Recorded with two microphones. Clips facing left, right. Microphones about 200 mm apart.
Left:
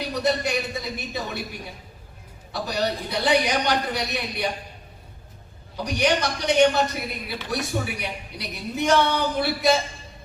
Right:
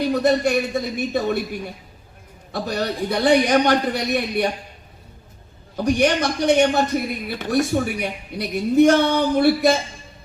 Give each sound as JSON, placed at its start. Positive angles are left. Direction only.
{"t": 0.0, "sound": "a man's voice", "side_deg": -50}
{"t": 2.5, "sound": "a man's voice", "side_deg": -50}
{"t": 5.7, "sound": "a man's voice", "side_deg": -50}